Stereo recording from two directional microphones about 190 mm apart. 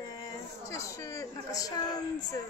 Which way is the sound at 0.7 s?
15° left (ahead or behind).